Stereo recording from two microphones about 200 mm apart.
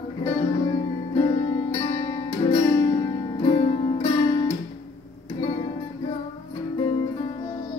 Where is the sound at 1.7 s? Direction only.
25° left (ahead or behind).